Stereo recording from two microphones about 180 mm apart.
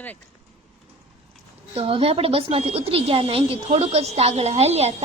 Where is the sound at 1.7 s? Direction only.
30° right (ahead or behind).